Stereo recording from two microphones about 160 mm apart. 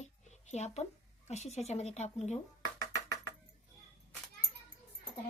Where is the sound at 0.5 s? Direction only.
45° left (ahead or behind).